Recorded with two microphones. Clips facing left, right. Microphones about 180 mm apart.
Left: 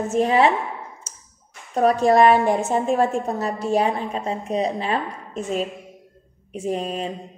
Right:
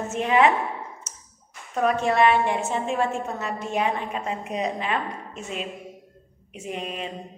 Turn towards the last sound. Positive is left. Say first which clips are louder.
# left 7 dB
turn(degrees=35)  # may be behind; listen again after turning